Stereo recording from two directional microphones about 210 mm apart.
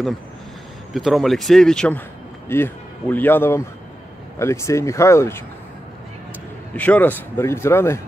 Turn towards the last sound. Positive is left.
turn(degrees=10)  # may be behind; listen again after turning